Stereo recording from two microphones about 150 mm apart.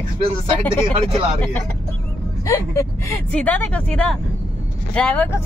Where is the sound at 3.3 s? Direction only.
10° left (ahead or behind).